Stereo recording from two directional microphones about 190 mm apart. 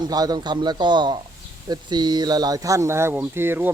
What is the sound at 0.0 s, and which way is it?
Speech, 20° right (ahead or behind).